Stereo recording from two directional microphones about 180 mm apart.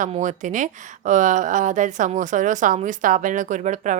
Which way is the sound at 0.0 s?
45° right (ahead or behind).